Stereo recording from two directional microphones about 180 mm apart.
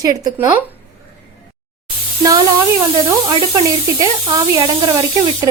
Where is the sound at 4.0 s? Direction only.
20° right (ahead or behind).